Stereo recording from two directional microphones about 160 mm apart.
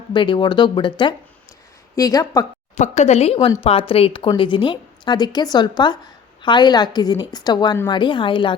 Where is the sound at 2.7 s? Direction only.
45° left (ahead or behind).